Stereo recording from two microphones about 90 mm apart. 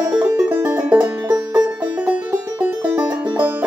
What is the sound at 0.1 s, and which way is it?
Music, 15° right (ahead or behind).